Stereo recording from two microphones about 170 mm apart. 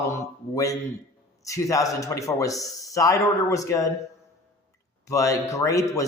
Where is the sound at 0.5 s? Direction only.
20° left (ahead or behind).